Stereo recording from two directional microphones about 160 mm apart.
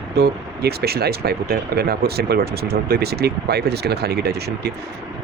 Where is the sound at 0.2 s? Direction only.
85° right.